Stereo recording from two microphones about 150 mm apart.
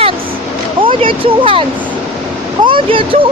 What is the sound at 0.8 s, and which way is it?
Speech, 35° right (ahead or behind).